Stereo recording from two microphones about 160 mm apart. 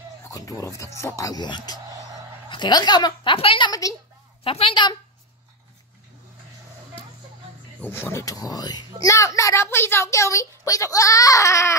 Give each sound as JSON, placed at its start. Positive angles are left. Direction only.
{"t": 0.2, "sound": "a woman's voice", "side_deg": 20}
{"t": 4.5, "sound": "a woman's voice", "side_deg": 35}
{"t": 7.8, "sound": "a woman's voice", "side_deg": 15}